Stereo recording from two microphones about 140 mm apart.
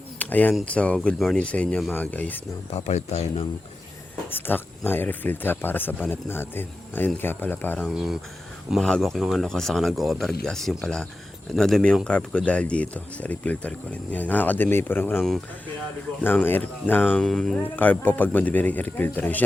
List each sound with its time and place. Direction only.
0.2 s a sound: 10° left (ahead or behind)
0.5 s speech: 10° left (ahead or behind)
2.7 s speech: 50° left (ahead or behind)
4.3 s speech: 15° left (ahead or behind)
7.9 s speech: centre (ahead or behind); by 15.2 s 15° left (ahead or behind)
16.2 s speech: 15° left (ahead or behind)